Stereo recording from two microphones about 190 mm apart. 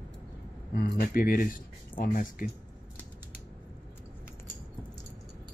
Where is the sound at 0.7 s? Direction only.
50° left (ahead or behind).